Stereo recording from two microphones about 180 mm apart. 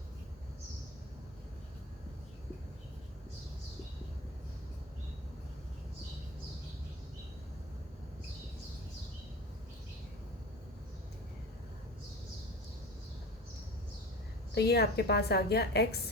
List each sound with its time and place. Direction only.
14.5 s a woman's voice: 65° left (ahead or behind)